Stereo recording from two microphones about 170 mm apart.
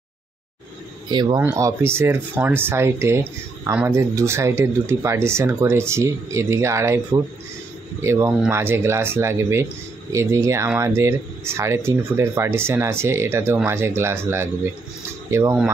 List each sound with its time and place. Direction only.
1.1 s speech: 25° right (ahead or behind)
8.0 s speech: 15° right (ahead or behind)